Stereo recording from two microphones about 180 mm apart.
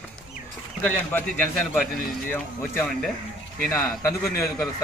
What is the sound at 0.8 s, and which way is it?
A man's voice, 10° left (ahead or behind).